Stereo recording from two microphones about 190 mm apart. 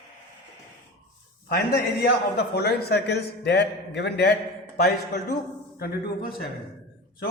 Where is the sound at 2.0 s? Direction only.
60° left (ahead or behind).